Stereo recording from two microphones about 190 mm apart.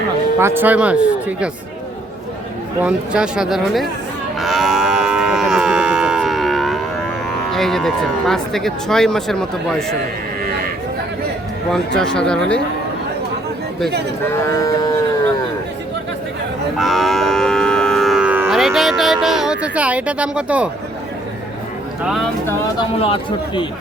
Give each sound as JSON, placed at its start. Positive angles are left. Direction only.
{"t": 0.3, "sound": "speech", "side_deg": -10}
{"t": 2.8, "sound": "speech", "side_deg": -5}
{"t": 4.4, "sound": "livestock", "side_deg": 0}
{"t": 7.5, "sound": "speech", "side_deg": 0}
{"t": 11.9, "sound": "speech", "side_deg": 5}
{"t": 14.5, "sound": "speech", "side_deg": 20}
{"t": 16.7, "sound": "moo", "side_deg": 0}
{"t": 22.0, "sound": "speech", "side_deg": 0}
{"t": 22.8, "sound": "speech", "side_deg": 30}